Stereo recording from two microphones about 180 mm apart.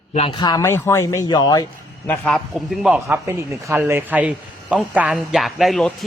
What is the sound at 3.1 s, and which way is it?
A man's voice, 15° right (ahead or behind).